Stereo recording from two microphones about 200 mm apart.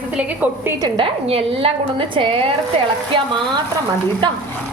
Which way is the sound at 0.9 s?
25° right (ahead or behind).